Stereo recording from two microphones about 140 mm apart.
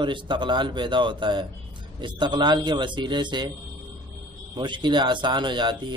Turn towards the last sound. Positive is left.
turn(degrees=-35)  # may be behind; listen again after turning